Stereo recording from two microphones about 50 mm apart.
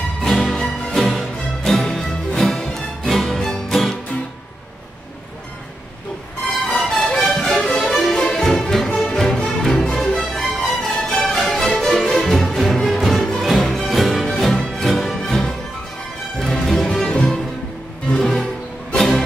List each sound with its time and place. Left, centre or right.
0.2 s music: centre
6.4 s music: centre
7.9 s music: centre
8.2 s music: centre
12.3 s music: centre
12.7 s music: centre
13.0 s music: centre